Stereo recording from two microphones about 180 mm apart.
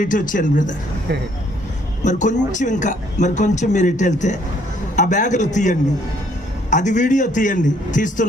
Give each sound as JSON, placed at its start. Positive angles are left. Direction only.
{"t": 0.0, "sound": "a man's voice", "side_deg": 45}
{"t": 2.0, "sound": "a man's voice", "side_deg": 45}